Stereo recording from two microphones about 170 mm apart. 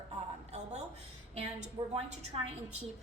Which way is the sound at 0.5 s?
40° right (ahead or behind).